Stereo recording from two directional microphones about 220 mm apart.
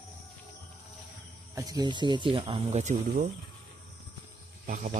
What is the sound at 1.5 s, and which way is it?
Speech, 15° right (ahead or behind).